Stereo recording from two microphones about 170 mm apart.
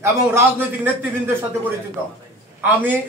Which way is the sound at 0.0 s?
15° right (ahead or behind).